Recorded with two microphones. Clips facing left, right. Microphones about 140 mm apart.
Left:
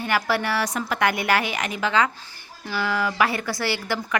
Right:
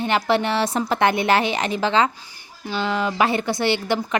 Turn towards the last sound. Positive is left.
turn(degrees=-20)  # may be behind; listen again after turning